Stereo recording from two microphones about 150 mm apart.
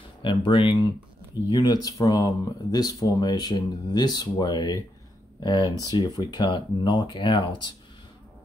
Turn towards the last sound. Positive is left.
turn(degrees=30)  # may be behind; listen again after turning